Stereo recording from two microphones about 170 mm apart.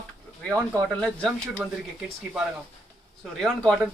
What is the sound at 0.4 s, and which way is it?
Speech, 10° left (ahead or behind).